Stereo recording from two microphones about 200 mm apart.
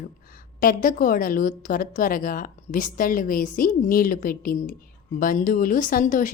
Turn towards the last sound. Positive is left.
turn(degrees=40)  # may be behind; listen again after turning